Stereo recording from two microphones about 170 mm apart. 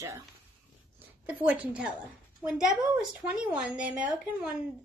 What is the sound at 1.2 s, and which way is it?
A child's voice, 5° right (ahead or behind).